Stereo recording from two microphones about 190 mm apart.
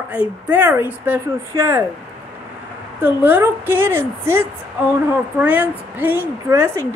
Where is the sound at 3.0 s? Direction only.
10° right (ahead or behind).